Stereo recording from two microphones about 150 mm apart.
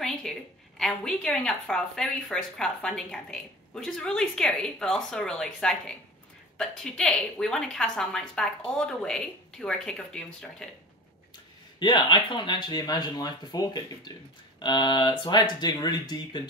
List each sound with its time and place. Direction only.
0.0 s a woman's voice: centre (ahead or behind)
11.8 s speech: 30° left (ahead or behind)